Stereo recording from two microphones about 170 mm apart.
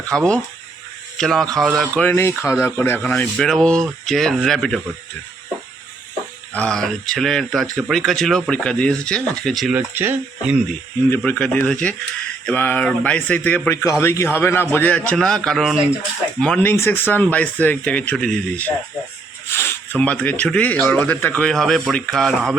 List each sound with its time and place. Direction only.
0.0 s speech: 5° left (ahead or behind)
6.5 s speech: 5° left (ahead or behind)
11.1 s speech: 5° left (ahead or behind)